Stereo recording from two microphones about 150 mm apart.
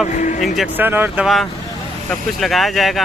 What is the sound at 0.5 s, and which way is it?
Speech, 10° right (ahead or behind).